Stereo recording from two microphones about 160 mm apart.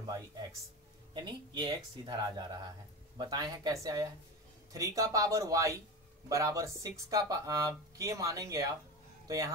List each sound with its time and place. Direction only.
0.0 s speech: 20° right (ahead or behind)